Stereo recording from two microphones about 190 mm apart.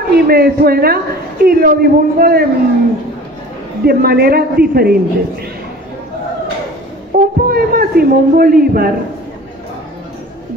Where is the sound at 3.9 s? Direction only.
55° right (ahead or behind).